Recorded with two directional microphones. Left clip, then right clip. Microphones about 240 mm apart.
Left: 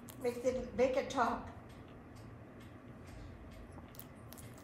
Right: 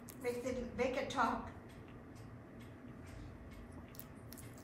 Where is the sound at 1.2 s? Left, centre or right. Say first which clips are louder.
Left 1 dB; left.